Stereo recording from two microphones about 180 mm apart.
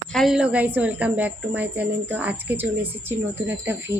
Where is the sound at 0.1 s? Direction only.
Centre (ahead or behind).